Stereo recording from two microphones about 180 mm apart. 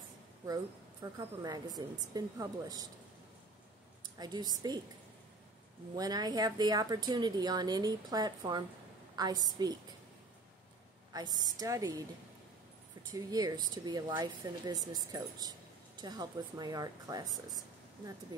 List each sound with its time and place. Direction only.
1.1 s speech: 20° right (ahead or behind)
4.2 s speech: 20° right (ahead or behind)
5.9 s speech: 20° right (ahead or behind)
11.1 s speech: 20° right (ahead or behind)
13.1 s speech: 20° right (ahead or behind)